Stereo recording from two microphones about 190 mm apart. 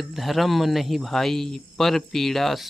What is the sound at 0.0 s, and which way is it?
Speech, centre (ahead or behind).